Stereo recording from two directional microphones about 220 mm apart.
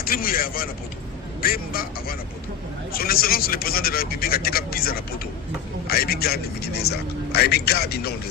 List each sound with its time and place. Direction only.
0.0 s a man's voice: 40° left (ahead or behind)